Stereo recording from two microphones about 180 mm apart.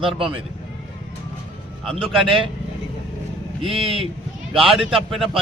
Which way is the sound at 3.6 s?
30° right (ahead or behind).